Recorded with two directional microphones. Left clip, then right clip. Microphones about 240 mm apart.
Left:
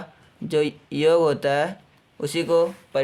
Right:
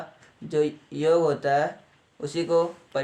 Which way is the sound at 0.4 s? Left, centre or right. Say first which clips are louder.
Left 2 dB; left.